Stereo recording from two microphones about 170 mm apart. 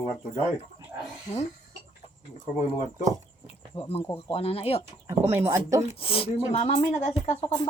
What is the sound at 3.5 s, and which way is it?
Insect, 35° left (ahead or behind).